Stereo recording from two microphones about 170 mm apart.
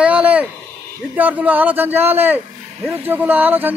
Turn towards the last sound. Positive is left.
turn(degrees=-10)  # may be behind; listen again after turning